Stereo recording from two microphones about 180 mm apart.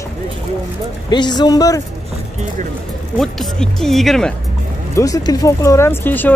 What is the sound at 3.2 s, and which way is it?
Speech, centre (ahead or behind).